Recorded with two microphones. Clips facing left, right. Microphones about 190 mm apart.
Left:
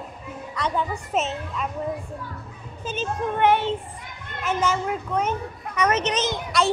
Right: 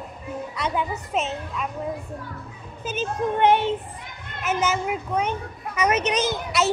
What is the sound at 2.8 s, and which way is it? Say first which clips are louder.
Speech: right 1 dB; 10° right (ahead or behind).